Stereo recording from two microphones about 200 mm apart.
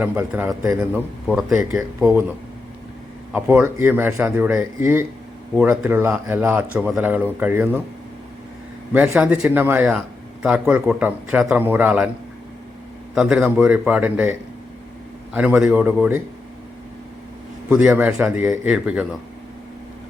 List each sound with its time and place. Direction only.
0.0 s a man's voice: 10° right (ahead or behind)
3.3 s a man's voice: 10° right (ahead or behind)
8.9 s a man's voice: 10° right (ahead or behind)
13.1 s a man's voice: 5° right (ahead or behind)
15.4 s a man's voice: 5° right (ahead or behind)
17.7 s a man's voice: 5° right (ahead or behind)